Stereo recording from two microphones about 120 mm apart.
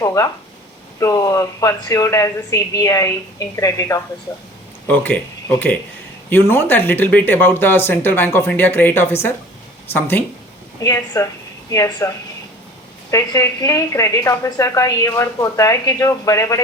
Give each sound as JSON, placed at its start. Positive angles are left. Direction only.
{"t": 0.0, "sound": "a woman's voice", "side_deg": 30}
{"t": 4.9, "sound": "speech", "side_deg": 15}
{"t": 10.8, "sound": "a woman's voice", "side_deg": 30}